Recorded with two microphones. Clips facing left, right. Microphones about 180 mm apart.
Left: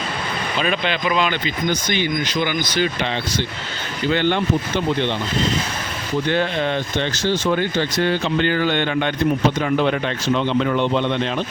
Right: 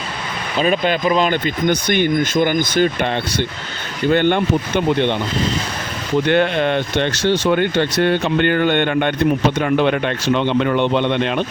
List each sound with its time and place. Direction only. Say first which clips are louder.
0.6 s speech: right 6 dB; 40° right (ahead or behind)
4.1 s speech: right 4 dB; 50° right (ahead or behind)
6.2 s speech: right 4 dB; 60° right (ahead or behind)